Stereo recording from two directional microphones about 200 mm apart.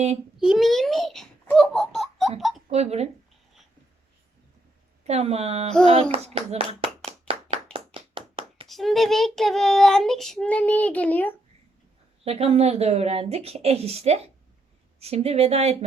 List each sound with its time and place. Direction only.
0.3 s giggle: centre (ahead or behind)
2.6 s speech: 30° right (ahead or behind)
5.0 s a woman's voice: 30° right (ahead or behind)
7.5 s clapping: 25° right (ahead or behind)
8.6 s child singing: centre (ahead or behind)
12.2 s a woman's voice: 30° right (ahead or behind)